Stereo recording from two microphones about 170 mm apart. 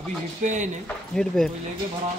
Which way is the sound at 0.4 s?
45° right (ahead or behind).